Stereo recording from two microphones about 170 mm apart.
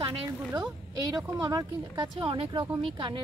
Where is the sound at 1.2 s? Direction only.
20° right (ahead or behind).